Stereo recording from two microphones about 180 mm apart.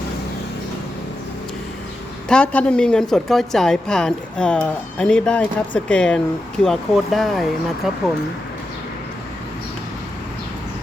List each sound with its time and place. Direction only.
2.3 s a woman's voice: 5° left (ahead or behind)